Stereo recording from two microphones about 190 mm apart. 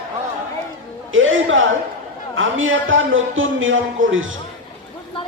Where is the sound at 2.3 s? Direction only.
90° right.